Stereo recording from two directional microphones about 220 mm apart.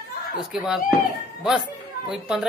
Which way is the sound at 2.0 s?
Centre (ahead or behind).